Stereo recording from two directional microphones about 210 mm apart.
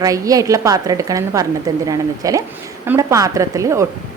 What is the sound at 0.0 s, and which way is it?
A woman's voice, 15° right (ahead or behind).